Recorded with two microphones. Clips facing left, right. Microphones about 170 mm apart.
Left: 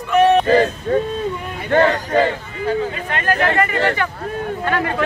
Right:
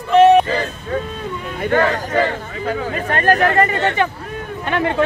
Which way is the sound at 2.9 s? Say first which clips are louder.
Right 5 dB; 45° right (ahead or behind).